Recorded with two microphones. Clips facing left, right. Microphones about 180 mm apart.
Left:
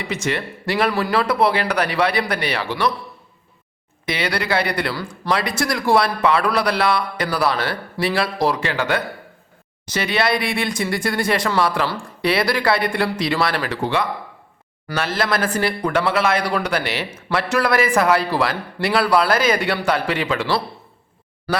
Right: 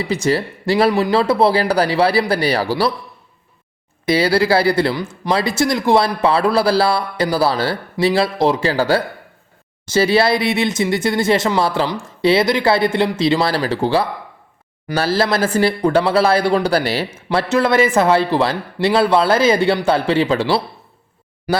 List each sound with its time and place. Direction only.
0.0 s speech: 35° right (ahead or behind)
4.0 s speech: 35° right (ahead or behind)